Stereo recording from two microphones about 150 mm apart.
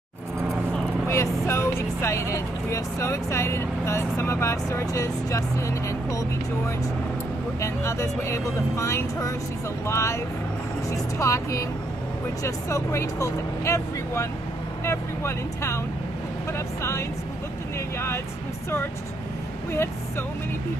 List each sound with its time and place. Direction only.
1.0 s vehicle: 20° left (ahead or behind)
1.4 s speech: 20° left (ahead or behind)
17.9 s vehicle: 15° left (ahead or behind)
19.7 s speech: 15° left (ahead or behind)